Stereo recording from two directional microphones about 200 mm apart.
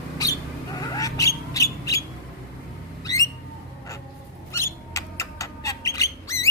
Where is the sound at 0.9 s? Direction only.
15° left (ahead or behind).